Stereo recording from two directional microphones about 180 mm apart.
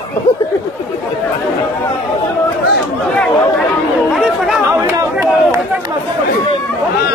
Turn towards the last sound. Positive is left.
turn(degrees=-15)  # may be behind; listen again after turning